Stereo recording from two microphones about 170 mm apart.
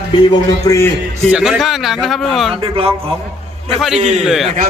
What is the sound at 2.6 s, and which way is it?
Speech, 35° right (ahead or behind).